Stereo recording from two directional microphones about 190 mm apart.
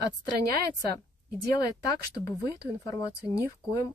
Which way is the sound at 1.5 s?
20° left (ahead or behind).